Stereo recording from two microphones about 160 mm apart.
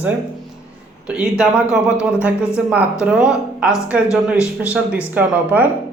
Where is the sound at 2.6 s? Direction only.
10° right (ahead or behind).